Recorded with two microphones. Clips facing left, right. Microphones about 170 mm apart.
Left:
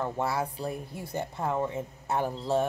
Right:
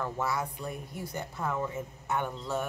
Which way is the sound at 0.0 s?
30° left (ahead or behind).